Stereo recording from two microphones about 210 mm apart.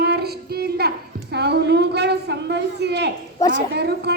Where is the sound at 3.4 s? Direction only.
15° left (ahead or behind).